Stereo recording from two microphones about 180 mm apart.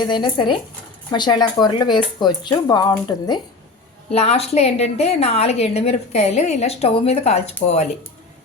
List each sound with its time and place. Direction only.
0.0 s speech: 25° left (ahead or behind)
4.1 s a woman's voice: 35° left (ahead or behind)